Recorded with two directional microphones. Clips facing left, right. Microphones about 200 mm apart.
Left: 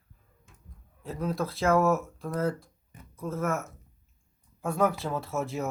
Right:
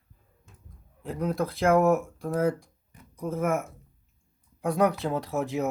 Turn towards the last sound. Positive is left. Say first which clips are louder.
# right 3 dB
turn(degrees=-15)  # may be behind; listen again after turning